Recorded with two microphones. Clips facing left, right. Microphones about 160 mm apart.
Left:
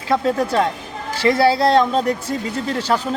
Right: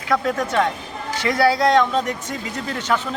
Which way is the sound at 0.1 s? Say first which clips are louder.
Left 3 dB; 30° left (ahead or behind).